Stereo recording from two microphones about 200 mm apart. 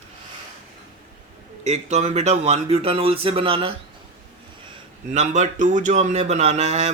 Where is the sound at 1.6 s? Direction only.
35° right (ahead or behind).